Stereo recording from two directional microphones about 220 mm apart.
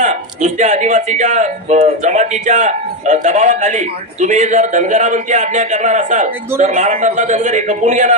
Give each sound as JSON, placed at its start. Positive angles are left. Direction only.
{"t": 0.0, "sound": "speech", "side_deg": -35}